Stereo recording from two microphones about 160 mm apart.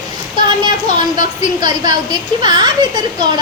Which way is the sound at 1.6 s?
25° right (ahead or behind).